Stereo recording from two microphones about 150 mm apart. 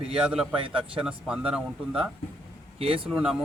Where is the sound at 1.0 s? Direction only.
5° right (ahead or behind).